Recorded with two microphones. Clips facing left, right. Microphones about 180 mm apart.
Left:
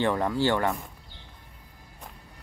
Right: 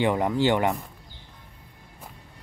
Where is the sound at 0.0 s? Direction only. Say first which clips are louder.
Right 2 dB; 15° right (ahead or behind).